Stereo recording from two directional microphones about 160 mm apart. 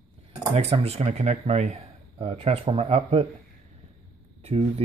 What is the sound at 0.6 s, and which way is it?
Speech, 40° right (ahead or behind).